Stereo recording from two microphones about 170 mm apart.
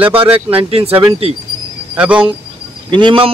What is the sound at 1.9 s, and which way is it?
Speech, 5° right (ahead or behind).